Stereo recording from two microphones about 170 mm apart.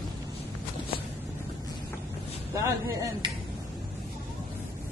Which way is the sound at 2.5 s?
20° right (ahead or behind).